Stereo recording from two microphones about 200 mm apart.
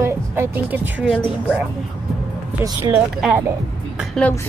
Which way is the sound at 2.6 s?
15° right (ahead or behind).